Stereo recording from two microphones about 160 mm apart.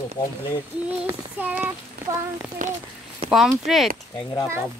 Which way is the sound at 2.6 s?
55° right (ahead or behind).